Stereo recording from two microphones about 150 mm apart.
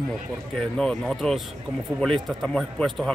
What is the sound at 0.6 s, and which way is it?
A man's voice, 5° left (ahead or behind).